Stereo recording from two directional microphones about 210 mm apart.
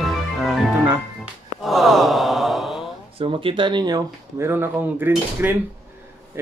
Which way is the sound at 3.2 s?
25° right (ahead or behind).